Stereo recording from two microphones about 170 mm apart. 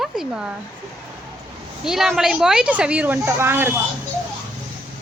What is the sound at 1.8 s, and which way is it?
Speech, centre (ahead or behind).